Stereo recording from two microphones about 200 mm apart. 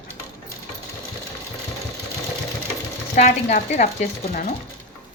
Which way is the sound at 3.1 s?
35° left (ahead or behind).